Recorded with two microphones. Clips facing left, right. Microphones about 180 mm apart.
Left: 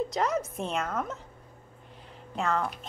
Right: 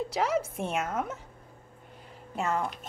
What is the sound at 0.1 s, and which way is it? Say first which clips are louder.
A woman's voice: even; 10° right (ahead or behind).